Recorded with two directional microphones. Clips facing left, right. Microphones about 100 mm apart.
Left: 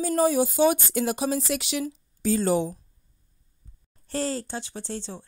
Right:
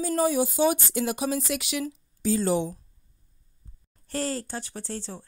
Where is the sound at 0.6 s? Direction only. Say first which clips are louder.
Left 2 dB; 50° left (ahead or behind).